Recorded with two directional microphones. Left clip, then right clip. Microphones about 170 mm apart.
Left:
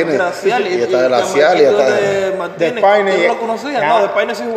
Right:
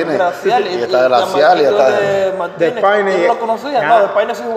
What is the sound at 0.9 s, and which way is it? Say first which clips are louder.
Speech: right 3 dB; 45° left (ahead or behind).